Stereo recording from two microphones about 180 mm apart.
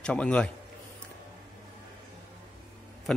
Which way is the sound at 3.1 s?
5° left (ahead or behind).